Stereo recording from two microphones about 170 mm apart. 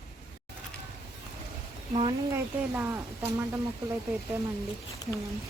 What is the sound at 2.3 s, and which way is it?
A woman's voice, 15° right (ahead or behind).